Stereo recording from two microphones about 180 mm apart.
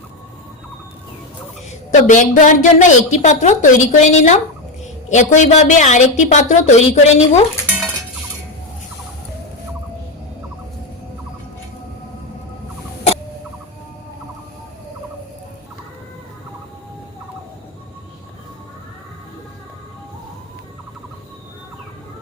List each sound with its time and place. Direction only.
1.9 s a woman's voice: 45° left (ahead or behind)